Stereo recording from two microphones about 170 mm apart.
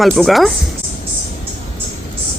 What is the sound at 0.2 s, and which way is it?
Speech, centre (ahead or behind).